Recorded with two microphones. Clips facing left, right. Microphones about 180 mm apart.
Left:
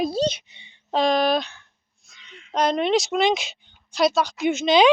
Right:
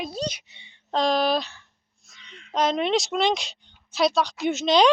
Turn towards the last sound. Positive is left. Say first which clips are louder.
# left 2 dB
turn(degrees=0)  # may be behind; listen again after turning